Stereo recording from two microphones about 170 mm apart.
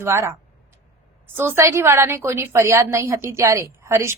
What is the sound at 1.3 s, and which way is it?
A woman's voice, 15° right (ahead or behind).